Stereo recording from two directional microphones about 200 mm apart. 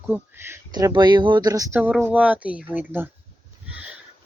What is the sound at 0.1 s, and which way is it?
Speech, 10° right (ahead or behind).